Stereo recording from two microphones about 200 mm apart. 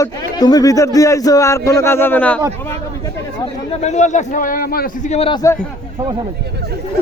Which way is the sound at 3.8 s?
35° left (ahead or behind).